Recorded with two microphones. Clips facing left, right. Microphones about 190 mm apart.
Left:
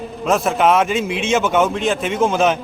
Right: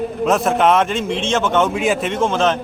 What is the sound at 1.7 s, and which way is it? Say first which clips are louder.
Speech: right 1 dB; 5° right (ahead or behind).